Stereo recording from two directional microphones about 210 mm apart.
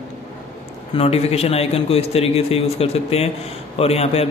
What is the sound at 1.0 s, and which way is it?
Speech, 30° left (ahead or behind).